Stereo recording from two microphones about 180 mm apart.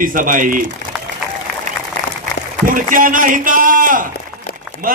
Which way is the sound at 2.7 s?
50° right (ahead or behind).